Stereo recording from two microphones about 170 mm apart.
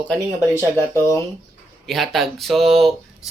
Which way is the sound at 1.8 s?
Centre (ahead or behind).